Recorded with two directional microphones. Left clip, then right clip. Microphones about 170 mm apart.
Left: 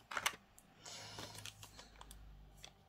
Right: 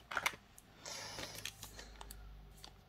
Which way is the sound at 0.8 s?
25° right (ahead or behind).